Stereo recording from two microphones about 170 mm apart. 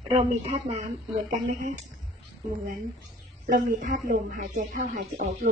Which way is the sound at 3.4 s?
50° right (ahead or behind).